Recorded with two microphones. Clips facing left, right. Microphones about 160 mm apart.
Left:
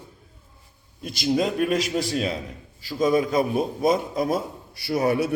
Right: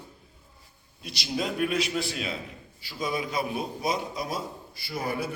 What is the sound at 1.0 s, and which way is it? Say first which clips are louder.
A man's voice: left 8 dB; 50° left (ahead or behind).